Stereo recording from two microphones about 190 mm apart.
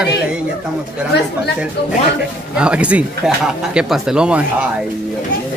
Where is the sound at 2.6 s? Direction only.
5° right (ahead or behind).